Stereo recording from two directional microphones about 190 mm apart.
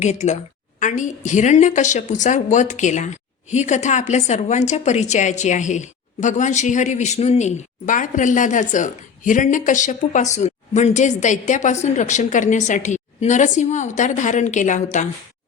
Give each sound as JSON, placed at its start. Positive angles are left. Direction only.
{"t": 0.0, "sound": "a woman's voice", "side_deg": 35}